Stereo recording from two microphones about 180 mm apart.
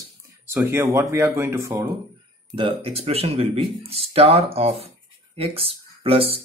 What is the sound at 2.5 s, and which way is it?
Speech, 30° right (ahead or behind).